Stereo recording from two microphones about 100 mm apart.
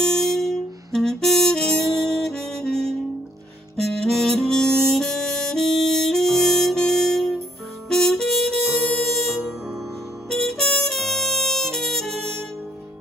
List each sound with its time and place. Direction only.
0.0 s music: 5° left (ahead or behind)
4.1 s harmonica: 5° left (ahead or behind)
7.9 s music: 5° left (ahead or behind)